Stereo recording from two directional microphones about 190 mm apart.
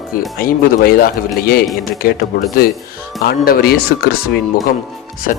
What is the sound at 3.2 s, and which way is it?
Speech, 55° left (ahead or behind).